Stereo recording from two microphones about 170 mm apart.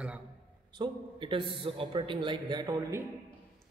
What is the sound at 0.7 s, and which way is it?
A man's voice, 30° right (ahead or behind).